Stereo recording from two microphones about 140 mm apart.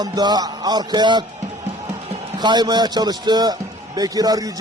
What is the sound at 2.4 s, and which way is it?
A man's voice, 30° right (ahead or behind).